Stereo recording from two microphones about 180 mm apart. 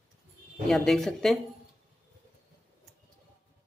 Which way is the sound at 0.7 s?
Centre (ahead or behind).